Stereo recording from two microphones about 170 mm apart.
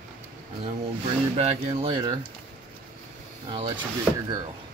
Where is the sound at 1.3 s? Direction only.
35° right (ahead or behind).